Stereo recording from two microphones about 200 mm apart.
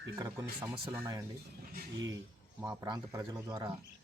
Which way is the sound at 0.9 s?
15° right (ahead or behind).